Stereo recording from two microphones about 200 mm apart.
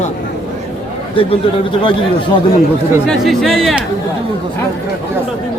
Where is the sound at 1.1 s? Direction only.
25° left (ahead or behind).